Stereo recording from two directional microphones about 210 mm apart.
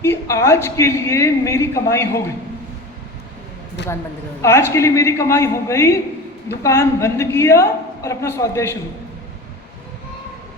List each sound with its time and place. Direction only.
0.0 s a man's voice: 10° left (ahead or behind)
3.8 s speech: 55° left (ahead or behind)
4.4 s a man's voice: 10° left (ahead or behind)